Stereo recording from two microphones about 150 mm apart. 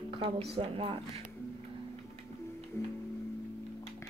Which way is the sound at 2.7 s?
20° left (ahead or behind).